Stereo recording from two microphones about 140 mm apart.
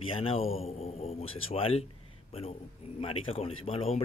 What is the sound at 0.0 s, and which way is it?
Speech, 40° left (ahead or behind).